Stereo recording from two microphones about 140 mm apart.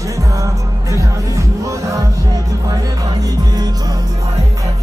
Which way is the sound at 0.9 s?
20° right (ahead or behind).